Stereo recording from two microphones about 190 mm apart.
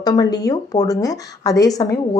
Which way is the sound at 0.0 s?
20° left (ahead or behind).